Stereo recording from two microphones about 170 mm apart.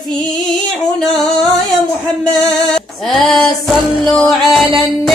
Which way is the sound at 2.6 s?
Centre (ahead or behind).